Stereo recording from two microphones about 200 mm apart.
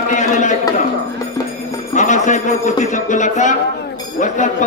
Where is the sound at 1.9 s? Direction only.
40° left (ahead or behind).